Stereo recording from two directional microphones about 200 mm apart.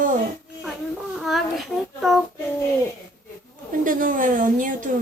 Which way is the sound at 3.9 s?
40° right (ahead or behind).